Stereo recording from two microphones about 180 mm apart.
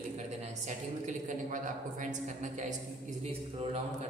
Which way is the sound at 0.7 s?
45° right (ahead or behind).